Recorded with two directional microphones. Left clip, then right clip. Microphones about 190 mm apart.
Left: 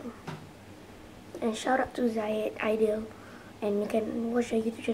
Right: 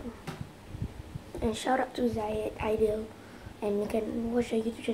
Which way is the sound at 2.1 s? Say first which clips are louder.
Left 2 dB; 15° left (ahead or behind).